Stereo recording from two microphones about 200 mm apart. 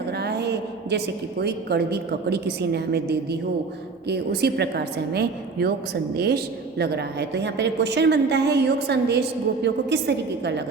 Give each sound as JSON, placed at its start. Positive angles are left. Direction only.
{"t": 0.1, "sound": "a woman's voice", "side_deg": -55}